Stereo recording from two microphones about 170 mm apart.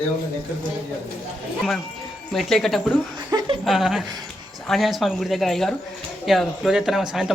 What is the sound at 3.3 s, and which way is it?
Chuckle, 25° right (ahead or behind).